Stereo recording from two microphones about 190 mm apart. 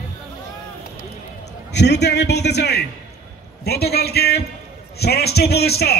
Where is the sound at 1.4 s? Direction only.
65° left (ahead or behind).